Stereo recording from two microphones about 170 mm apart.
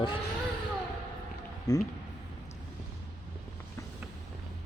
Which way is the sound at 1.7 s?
20° left (ahead or behind).